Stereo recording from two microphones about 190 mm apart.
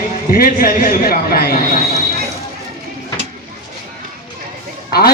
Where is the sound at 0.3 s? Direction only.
45° left (ahead or behind).